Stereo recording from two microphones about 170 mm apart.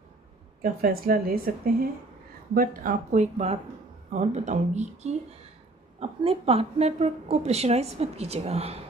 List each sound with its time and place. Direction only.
0.6 s a woman's voice: 60° right (ahead or behind); by 8.7 s 35° right (ahead or behind)